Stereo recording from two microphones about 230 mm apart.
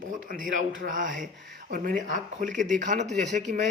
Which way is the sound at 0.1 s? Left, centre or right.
Right.